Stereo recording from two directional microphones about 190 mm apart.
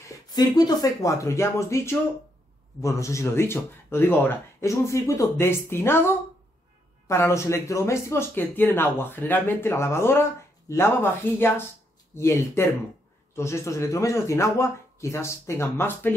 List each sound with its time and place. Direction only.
0.0 s speech: 20° left (ahead or behind)